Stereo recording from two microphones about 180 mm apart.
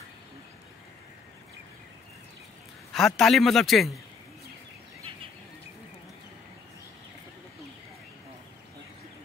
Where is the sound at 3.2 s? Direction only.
Centre (ahead or behind).